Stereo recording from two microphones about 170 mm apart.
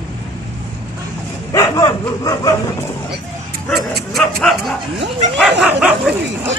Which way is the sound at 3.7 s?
Centre (ahead or behind).